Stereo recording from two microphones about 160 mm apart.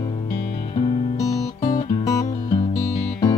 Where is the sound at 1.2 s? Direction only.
20° left (ahead or behind).